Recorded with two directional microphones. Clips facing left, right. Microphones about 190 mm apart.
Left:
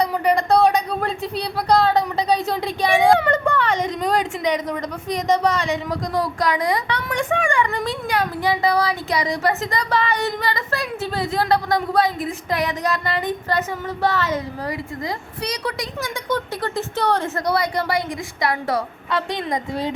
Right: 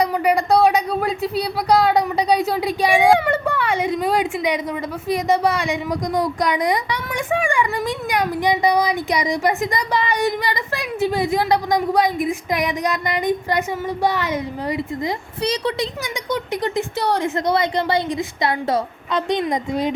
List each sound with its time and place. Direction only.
0.0 s a woman's voice: 10° right (ahead or behind); by 15.9 s 25° right (ahead or behind)
16.3 s a woman's voice: 15° right (ahead or behind)